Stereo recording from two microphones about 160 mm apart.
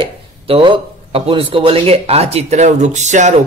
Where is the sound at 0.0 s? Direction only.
35° right (ahead or behind).